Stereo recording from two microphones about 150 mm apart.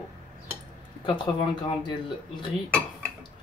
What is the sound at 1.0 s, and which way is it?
Speech, 30° left (ahead or behind).